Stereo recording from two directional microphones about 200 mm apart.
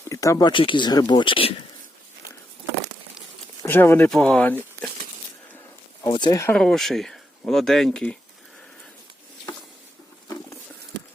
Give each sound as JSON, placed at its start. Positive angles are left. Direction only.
{"t": 0.1, "sound": "speech", "side_deg": 15}
{"t": 3.6, "sound": "speech", "side_deg": 10}
{"t": 6.0, "sound": "speech", "side_deg": 20}
{"t": 6.6, "sound": "speech", "side_deg": 0}